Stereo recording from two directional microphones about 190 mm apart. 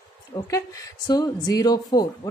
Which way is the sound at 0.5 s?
15° left (ahead or behind).